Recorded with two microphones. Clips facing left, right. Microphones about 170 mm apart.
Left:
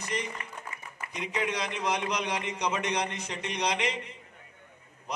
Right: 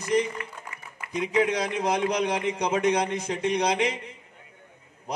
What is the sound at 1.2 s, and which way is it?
A man's voice, 50° right (ahead or behind).